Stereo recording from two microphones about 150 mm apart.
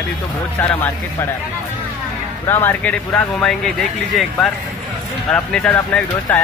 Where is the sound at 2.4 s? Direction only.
15° left (ahead or behind).